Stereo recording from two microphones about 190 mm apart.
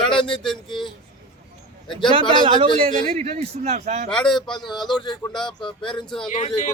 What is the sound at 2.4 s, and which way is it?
A man's voice, 30° right (ahead or behind).